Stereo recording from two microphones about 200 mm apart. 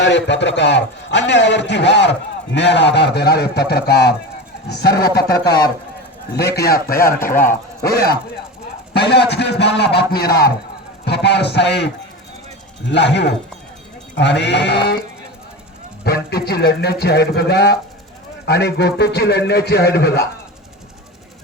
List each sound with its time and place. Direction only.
0.0 s a man's voice: 60° left (ahead or behind)
12.9 s a man's voice: 60° left (ahead or behind)
16.0 s a man's voice: 50° left (ahead or behind)